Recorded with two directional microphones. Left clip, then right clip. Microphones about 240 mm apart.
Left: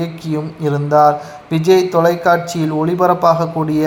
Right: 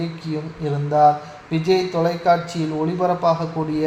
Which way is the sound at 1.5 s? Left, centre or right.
Left.